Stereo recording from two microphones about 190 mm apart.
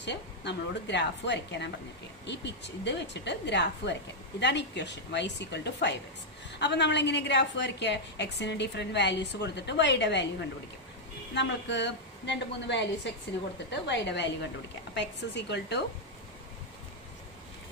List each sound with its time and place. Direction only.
0.0 s a woman's voice: 65° left (ahead or behind)
11.3 s a woman's voice: 65° left (ahead or behind)